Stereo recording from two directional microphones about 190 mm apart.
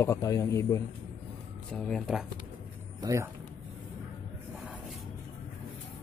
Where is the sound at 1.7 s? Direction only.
5° left (ahead or behind).